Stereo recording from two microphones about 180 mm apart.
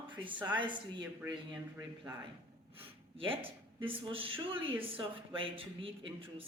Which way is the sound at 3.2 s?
30° right (ahead or behind).